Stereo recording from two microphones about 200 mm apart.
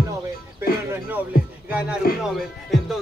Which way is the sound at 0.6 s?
10° right (ahead or behind).